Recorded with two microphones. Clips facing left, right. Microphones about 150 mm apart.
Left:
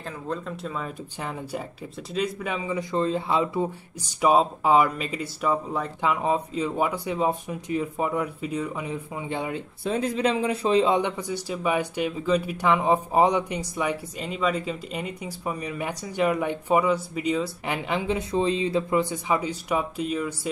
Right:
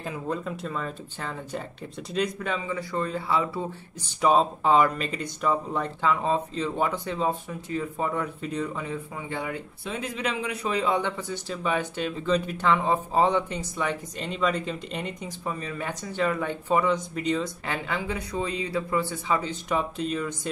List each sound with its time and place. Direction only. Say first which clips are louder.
0.0 s speech: right 1 dB; 5° right (ahead or behind); by 9.6 s 20° left (ahead or behind)
9.8 s speech: left 7 dB; 35° left (ahead or behind); by 17.7 s 10° left (ahead or behind)
17.8 s speech: left 4 dB; 20° left (ahead or behind)